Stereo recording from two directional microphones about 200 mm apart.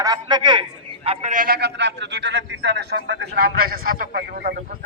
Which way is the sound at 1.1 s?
40° right (ahead or behind).